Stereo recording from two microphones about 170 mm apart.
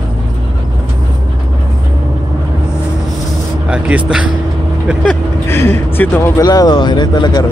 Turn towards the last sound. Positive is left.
turn(degrees=25)  # may be behind; listen again after turning